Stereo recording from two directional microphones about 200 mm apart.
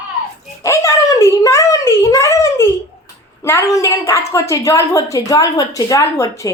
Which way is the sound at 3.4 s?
15° left (ahead or behind).